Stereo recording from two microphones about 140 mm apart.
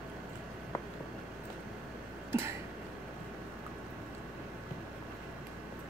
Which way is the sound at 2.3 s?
20° right (ahead or behind).